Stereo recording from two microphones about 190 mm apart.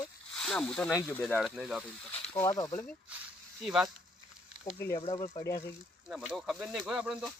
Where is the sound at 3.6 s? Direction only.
5° right (ahead or behind).